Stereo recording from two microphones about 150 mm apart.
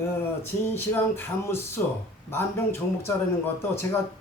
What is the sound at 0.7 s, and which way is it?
A man's voice, 15° left (ahead or behind).